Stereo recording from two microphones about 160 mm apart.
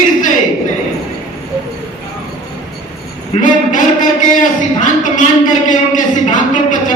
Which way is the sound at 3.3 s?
55° left (ahead or behind).